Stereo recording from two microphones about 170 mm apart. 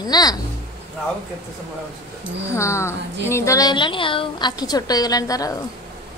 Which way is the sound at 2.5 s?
15° left (ahead or behind).